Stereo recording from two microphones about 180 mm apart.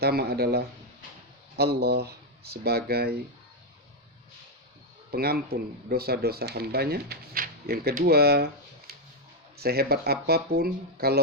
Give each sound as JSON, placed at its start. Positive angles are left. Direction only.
{"t": 0.0, "sound": "speech", "side_deg": -60}
{"t": 5.1, "sound": "speech", "side_deg": -60}
{"t": 9.6, "sound": "speech", "side_deg": -60}